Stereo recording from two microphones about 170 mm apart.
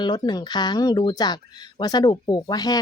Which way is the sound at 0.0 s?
25° left (ahead or behind).